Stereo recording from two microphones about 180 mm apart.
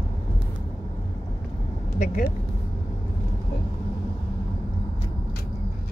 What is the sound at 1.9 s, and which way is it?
Speech, 45° left (ahead or behind).